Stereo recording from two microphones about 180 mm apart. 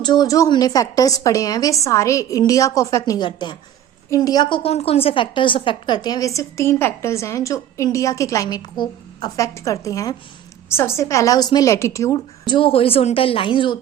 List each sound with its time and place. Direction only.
0.0 s a woman's voice: 25° left (ahead or behind)